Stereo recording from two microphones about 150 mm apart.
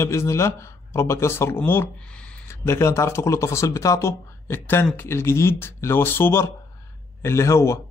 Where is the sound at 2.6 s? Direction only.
20° left (ahead or behind).